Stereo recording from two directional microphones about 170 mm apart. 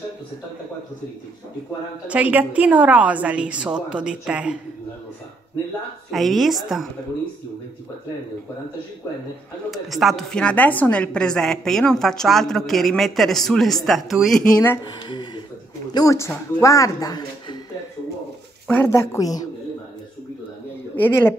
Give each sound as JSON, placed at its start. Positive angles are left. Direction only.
{"t": 2.0, "sound": "a woman's voice", "side_deg": -10}
{"t": 6.0, "sound": "a woman's voice", "side_deg": 0}
{"t": 9.7, "sound": "a woman's voice", "side_deg": 0}
{"t": 15.0, "sound": "a sound", "side_deg": 30}
{"t": 15.9, "sound": "speech", "side_deg": 20}
{"t": 18.7, "sound": "a woman's voice", "side_deg": 15}
{"t": 20.9, "sound": "a woman's voice", "side_deg": 10}